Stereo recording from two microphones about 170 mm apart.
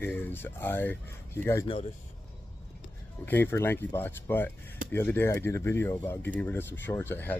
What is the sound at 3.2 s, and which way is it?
Speech, 10° left (ahead or behind).